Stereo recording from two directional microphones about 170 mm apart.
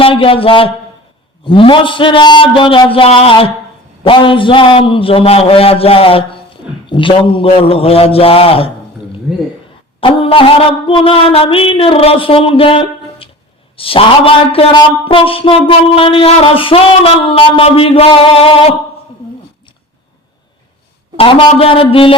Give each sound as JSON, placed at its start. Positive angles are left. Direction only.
{"t": 0.0, "sound": "a man's voice", "side_deg": 30}
{"t": 9.3, "sound": "speech", "side_deg": 0}
{"t": 10.0, "sound": "a man's voice", "side_deg": 30}
{"t": 21.2, "sound": "a man's voice", "side_deg": 30}